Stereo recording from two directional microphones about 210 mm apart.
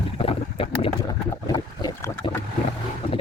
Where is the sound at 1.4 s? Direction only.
20° left (ahead or behind).